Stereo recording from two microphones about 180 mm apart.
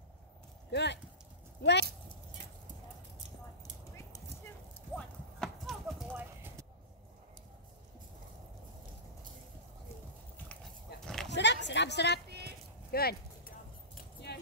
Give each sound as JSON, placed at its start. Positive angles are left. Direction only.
{"t": 0.7, "sound": "speech", "side_deg": 70}
{"t": 4.9, "sound": "clip-clop", "side_deg": 0}
{"t": 6.1, "sound": "clip-clop", "side_deg": -10}
{"t": 11.2, "sound": "a sound", "side_deg": 75}
{"t": 12.9, "sound": "speech", "side_deg": 60}
{"t": 14.3, "sound": "clip-clop", "side_deg": 65}